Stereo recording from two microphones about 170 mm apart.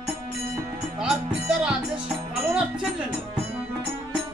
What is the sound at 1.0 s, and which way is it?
Music, 5° right (ahead or behind).